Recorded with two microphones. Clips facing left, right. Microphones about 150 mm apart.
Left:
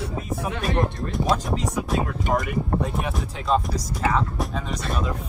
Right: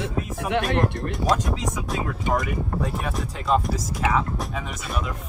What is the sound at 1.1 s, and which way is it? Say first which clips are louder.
Music: left 2 dB; centre (ahead or behind).